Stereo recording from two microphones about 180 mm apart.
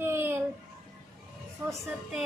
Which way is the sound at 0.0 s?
15° right (ahead or behind).